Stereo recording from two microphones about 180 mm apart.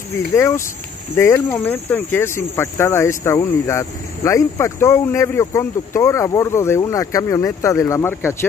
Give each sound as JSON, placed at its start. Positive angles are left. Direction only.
{"t": 0.3, "sound": "speech", "side_deg": 15}